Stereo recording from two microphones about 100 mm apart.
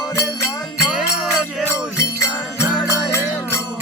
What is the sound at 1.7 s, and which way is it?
Music, 30° left (ahead or behind).